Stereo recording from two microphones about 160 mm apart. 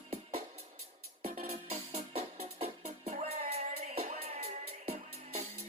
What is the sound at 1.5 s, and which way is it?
Music, 40° right (ahead or behind).